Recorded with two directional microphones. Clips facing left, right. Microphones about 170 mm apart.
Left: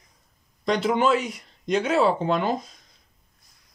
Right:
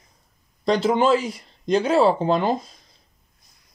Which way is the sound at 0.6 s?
30° right (ahead or behind).